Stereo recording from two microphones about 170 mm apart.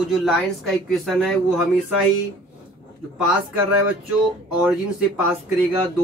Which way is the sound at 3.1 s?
5° right (ahead or behind).